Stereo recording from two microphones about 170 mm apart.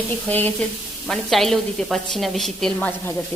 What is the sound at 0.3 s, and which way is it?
A woman's voice, 10° left (ahead or behind).